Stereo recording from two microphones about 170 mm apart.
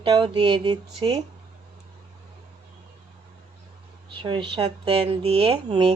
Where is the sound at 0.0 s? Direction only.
30° right (ahead or behind).